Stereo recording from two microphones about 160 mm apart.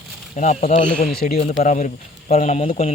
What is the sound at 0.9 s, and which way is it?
Speech, 65° left (ahead or behind).